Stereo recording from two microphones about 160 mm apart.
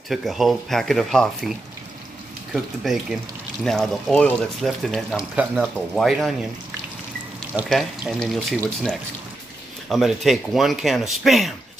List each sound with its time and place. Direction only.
0.1 s speech: centre (ahead or behind)
7.7 s speech: centre (ahead or behind)